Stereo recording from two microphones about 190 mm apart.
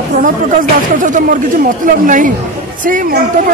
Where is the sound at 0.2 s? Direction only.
45° right (ahead or behind).